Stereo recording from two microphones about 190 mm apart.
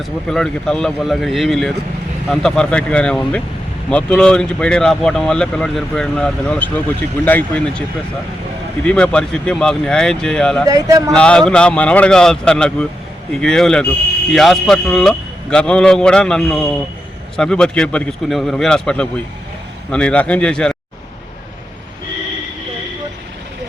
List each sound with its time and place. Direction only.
0.0 s speech: 5° left (ahead or behind)
10.7 s speech: 15° right (ahead or behind)
11.1 s speech: 5° left (ahead or behind)